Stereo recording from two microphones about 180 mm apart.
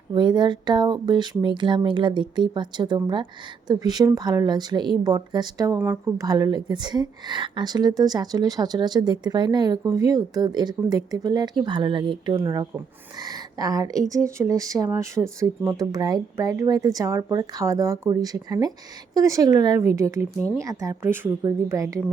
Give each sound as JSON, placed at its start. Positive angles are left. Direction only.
{"t": 0.1, "sound": "a woman's voice", "side_deg": -25}